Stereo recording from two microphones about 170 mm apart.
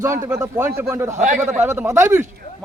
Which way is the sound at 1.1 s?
50° right (ahead or behind).